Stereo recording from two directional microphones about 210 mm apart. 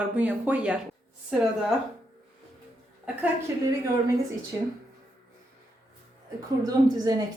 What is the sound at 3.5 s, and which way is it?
Speech, 15° right (ahead or behind).